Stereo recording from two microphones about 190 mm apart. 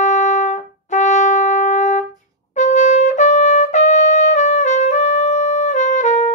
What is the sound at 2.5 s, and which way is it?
Trumpet, 40° left (ahead or behind).